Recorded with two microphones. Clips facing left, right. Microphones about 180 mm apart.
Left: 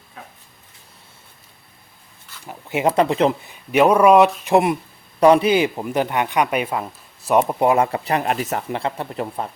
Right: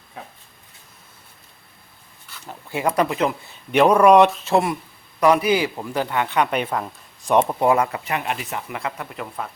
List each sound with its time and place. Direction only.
2.5 s speech: 20° left (ahead or behind)
3.7 s speech: 5° left (ahead or behind)
4.4 s a man's voice: 20° left (ahead or behind)
7.9 s speech: 35° left (ahead or behind)
8.8 s speech: 30° left (ahead or behind)